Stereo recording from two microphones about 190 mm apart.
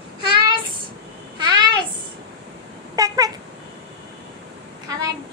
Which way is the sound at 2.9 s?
20° right (ahead or behind).